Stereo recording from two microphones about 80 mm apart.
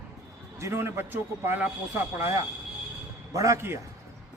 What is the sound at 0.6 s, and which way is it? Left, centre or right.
A man's voice, right.